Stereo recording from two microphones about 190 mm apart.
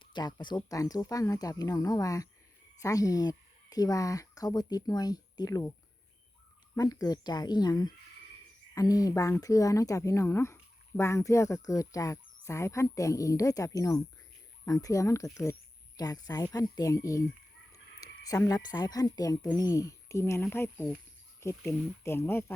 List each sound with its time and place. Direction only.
0.0 s speech: 25° left (ahead or behind)
6.7 s speech: 20° left (ahead or behind)
18.3 s speech: 20° left (ahead or behind)